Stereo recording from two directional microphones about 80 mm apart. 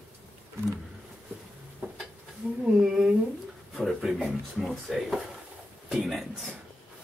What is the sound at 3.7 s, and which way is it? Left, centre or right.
Speech, centre.